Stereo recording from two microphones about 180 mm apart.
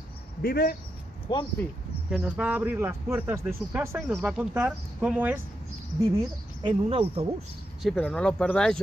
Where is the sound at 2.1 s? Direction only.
5° right (ahead or behind).